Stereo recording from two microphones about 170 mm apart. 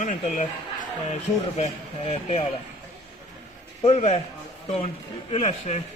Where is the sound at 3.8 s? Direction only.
40° left (ahead or behind).